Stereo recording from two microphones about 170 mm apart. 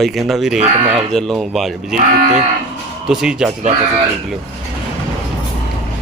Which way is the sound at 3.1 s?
5° right (ahead or behind).